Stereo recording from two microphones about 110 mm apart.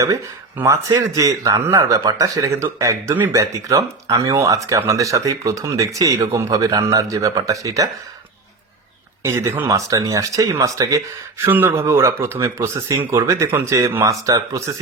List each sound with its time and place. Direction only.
0.5 s speech: 25° right (ahead or behind)
9.2 s speech: 25° right (ahead or behind)
11.4 s speech: 20° right (ahead or behind)